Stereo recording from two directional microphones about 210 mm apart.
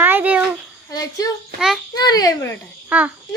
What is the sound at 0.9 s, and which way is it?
Speech, 15° left (ahead or behind).